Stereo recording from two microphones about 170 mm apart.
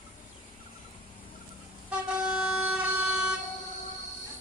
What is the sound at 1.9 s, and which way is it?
Vehicle, 5° right (ahead or behind).